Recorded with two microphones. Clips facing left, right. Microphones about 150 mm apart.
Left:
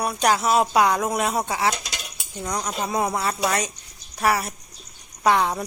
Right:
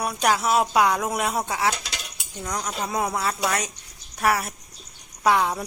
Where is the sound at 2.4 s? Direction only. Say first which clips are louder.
Left 2 dB; 15° left (ahead or behind).